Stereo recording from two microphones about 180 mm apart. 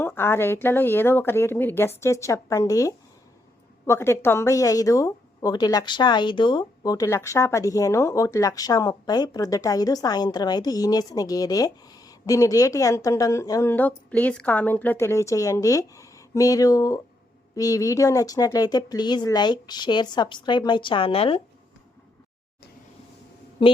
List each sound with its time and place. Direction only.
0.0 s a woman's voice: 10° left (ahead or behind); by 21.4 s 30° left (ahead or behind)
23.6 s a woman's voice: 30° left (ahead or behind)